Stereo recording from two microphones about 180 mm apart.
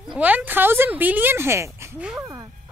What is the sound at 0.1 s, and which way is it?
A woman's voice, 10° right (ahead or behind).